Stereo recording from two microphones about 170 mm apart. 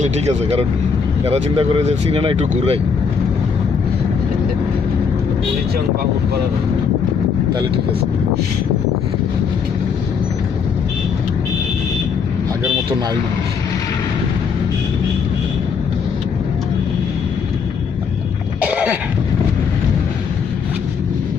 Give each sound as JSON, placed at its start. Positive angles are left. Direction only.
{"t": 0.0, "sound": "speech", "side_deg": -40}
{"t": 18.7, "sound": "cough", "side_deg": -5}